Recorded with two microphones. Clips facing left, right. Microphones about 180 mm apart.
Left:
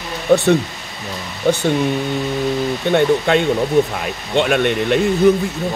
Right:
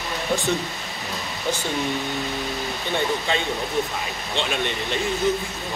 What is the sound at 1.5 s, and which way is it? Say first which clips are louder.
Speech: left 10 dB; 60° left (ahead or behind).